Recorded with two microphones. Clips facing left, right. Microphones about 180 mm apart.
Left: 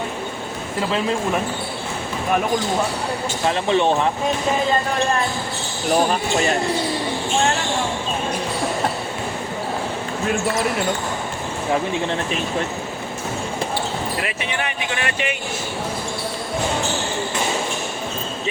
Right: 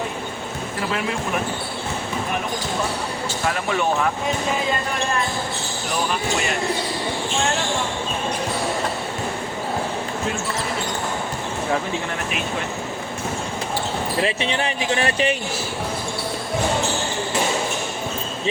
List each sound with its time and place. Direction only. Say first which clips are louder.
3.4 s speech: left 4 dB; 25° left (ahead or behind)
14.2 s speech: right 4 dB; 30° right (ahead or behind)